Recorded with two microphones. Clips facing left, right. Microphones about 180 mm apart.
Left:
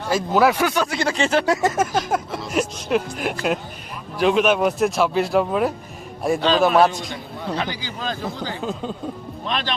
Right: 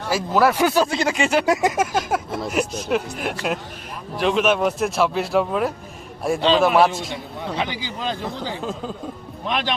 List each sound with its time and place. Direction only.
0.1 s a man's voice: 5° right (ahead or behind)
0.6 s speech: 30° right (ahead or behind)
1.1 s a man's voice: 10° right (ahead or behind)
7.5 s speech: 20° right (ahead or behind)
8.6 s a man's voice: centre (ahead or behind)
9.5 s speech: 10° right (ahead or behind)